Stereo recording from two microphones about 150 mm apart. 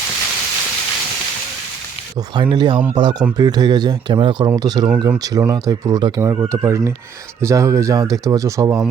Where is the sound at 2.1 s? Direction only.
30° right (ahead or behind).